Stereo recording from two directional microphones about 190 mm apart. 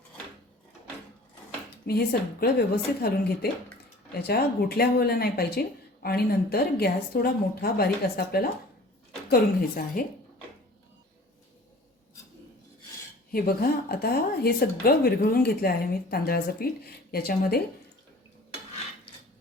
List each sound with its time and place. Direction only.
1.9 s speech: 55° left (ahead or behind)
13.3 s speech: 50° left (ahead or behind)